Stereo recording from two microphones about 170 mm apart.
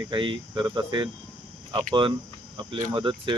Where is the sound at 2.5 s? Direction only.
25° right (ahead or behind).